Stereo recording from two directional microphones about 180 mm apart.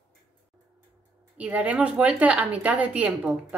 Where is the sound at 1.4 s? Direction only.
10° right (ahead or behind).